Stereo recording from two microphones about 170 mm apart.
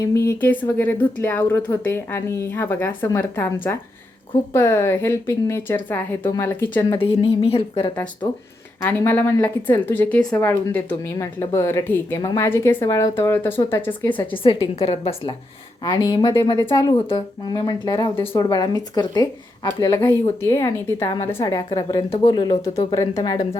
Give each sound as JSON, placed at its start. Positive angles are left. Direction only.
{"t": 0.0, "sound": "a woman's voice", "side_deg": 15}
{"t": 7.1, "sound": "a woman's voice", "side_deg": 35}
{"t": 8.8, "sound": "a woman's voice", "side_deg": 10}
{"t": 14.3, "sound": "a woman's voice", "side_deg": 30}